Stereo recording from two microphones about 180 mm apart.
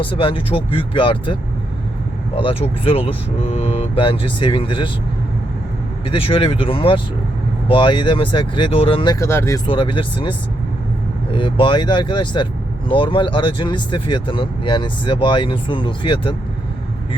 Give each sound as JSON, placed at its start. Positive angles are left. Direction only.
{"t": 0.0, "sound": "speech", "side_deg": 30}
{"t": 6.1, "sound": "speech", "side_deg": 30}
{"t": 9.1, "sound": "speech", "side_deg": 15}
{"t": 9.6, "sound": "speech", "side_deg": 30}